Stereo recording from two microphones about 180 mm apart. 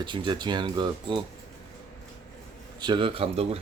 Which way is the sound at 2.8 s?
25° right (ahead or behind).